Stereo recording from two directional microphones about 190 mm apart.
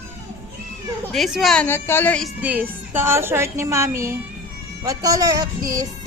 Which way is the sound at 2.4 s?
10° right (ahead or behind).